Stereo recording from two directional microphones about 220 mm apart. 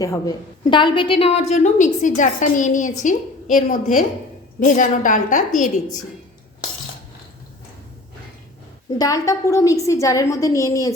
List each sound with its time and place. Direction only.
0.0 s a woman's voice: 15° left (ahead or behind); by 6.0 s 35° left (ahead or behind)
9.0 s a woman's voice: 15° left (ahead or behind)